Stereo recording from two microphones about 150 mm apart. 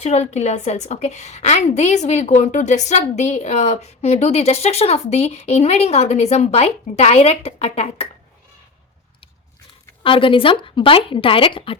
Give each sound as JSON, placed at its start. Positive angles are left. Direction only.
{"t": 0.0, "sound": "a woman's voice", "side_deg": 45}
{"t": 10.0, "sound": "speech", "side_deg": 35}